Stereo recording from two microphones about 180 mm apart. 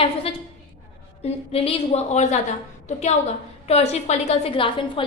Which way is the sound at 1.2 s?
35° left (ahead or behind).